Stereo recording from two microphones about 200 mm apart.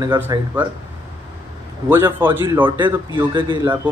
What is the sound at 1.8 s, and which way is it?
Speech, 10° right (ahead or behind).